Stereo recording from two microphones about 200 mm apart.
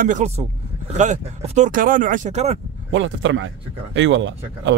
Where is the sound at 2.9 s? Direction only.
70° right (ahead or behind).